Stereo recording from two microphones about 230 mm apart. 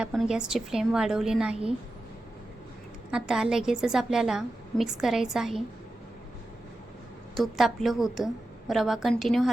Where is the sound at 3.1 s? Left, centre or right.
Centre.